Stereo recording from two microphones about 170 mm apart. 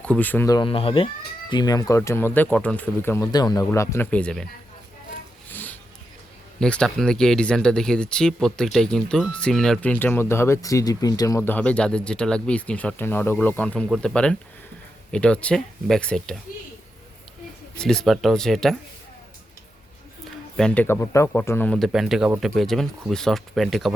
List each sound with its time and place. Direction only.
0.0 s speech: 10° left (ahead or behind)
5.5 s a sound: 10° left (ahead or behind)
6.6 s speech: 5° left (ahead or behind)
17.7 s speech: 5° left (ahead or behind)
20.6 s speech: 5° left (ahead or behind)
21.8 s speech: centre (ahead or behind)